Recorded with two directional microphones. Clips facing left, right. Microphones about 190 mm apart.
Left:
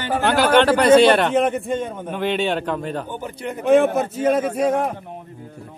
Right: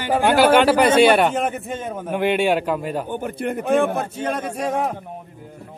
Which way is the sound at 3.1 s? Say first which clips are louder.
Right 4 dB; 55° right (ahead or behind).